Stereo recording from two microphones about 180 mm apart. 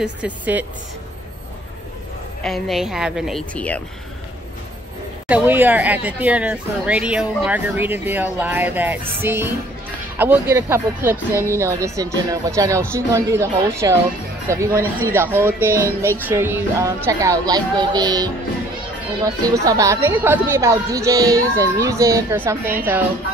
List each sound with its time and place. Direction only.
0.0 s speech: 10° right (ahead or behind)
2.4 s a woman's voice: centre (ahead or behind)
5.3 s speech: 10° right (ahead or behind)